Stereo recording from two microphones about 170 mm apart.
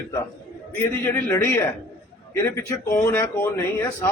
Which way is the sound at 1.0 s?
10° left (ahead or behind).